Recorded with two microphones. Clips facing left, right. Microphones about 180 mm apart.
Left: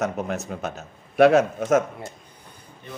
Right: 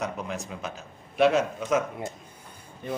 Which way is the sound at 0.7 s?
60° left (ahead or behind).